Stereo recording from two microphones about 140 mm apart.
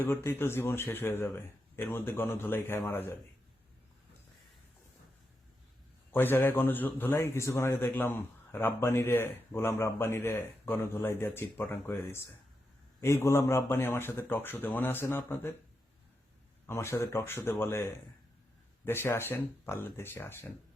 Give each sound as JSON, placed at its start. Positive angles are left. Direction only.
{"t": 0.0, "sound": "a man's voice", "side_deg": 15}
{"t": 6.1, "sound": "a man's voice", "side_deg": 15}
{"t": 16.6, "sound": "a man's voice", "side_deg": 20}
{"t": 18.9, "sound": "a man's voice", "side_deg": 15}